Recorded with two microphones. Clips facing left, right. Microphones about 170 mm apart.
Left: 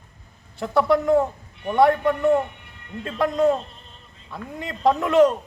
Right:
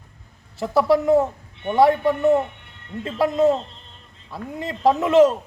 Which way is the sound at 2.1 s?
20° right (ahead or behind).